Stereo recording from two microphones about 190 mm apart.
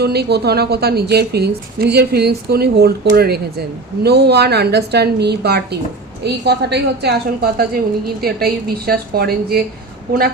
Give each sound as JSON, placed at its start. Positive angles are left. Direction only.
{"t": 0.0, "sound": "a woman's voice", "side_deg": -60}